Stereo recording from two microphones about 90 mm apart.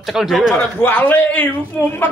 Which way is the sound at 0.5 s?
25° left (ahead or behind).